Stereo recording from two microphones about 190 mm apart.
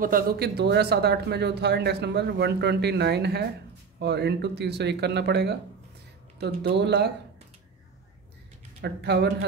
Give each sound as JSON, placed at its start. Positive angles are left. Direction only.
{"t": 0.0, "sound": "speech", "side_deg": -55}
{"t": 8.8, "sound": "speech", "side_deg": -60}